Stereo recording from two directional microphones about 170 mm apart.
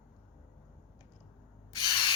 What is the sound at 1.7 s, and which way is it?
Spray, 25° left (ahead or behind).